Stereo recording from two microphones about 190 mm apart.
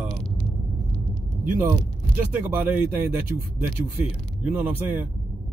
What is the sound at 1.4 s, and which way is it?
Speech, 15° right (ahead or behind).